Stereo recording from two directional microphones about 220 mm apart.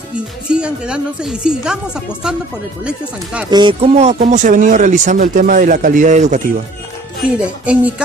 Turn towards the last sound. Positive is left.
turn(degrees=-5)  # may be behind; listen again after turning